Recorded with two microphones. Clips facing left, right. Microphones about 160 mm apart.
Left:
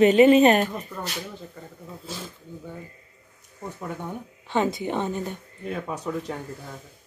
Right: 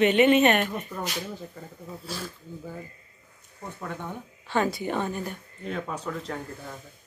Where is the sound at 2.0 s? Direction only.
20° left (ahead or behind).